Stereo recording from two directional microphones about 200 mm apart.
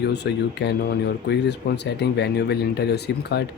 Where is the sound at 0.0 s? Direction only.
60° left (ahead or behind).